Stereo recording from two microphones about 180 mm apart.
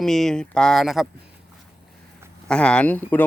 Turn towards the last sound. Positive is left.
turn(degrees=10)  # may be behind; listen again after turning